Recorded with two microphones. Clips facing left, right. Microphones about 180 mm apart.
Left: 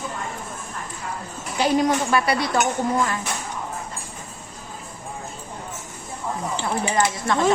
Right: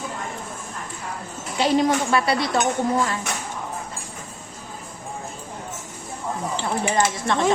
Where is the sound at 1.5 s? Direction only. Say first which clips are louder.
Even; 25° right (ahead or behind).